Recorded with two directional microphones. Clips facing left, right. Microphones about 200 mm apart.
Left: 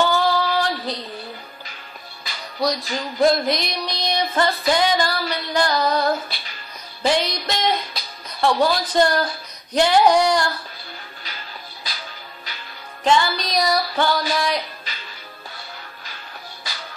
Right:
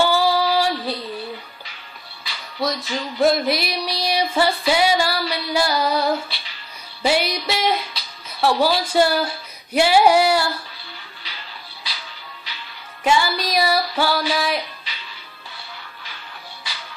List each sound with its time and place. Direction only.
0.0 s female singing: 10° right (ahead or behind)
2.3 s music: 45° left (ahead or behind)
2.6 s a sound: centre (ahead or behind)
6.2 s music: 45° left (ahead or behind)
7.1 s a sound: 10° right (ahead or behind)
11.9 s music: 45° left (ahead or behind)
13.0 s a sound: 10° right (ahead or behind)
14.3 s speech: 5° right (ahead or behind)
14.9 s music: 45° left (ahead or behind)
16.6 s music: 40° left (ahead or behind)